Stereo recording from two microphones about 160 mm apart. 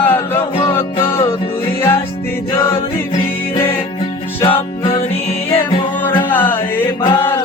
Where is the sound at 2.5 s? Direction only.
15° left (ahead or behind).